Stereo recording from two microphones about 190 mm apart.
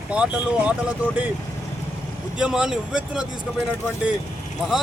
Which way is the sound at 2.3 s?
5° right (ahead or behind).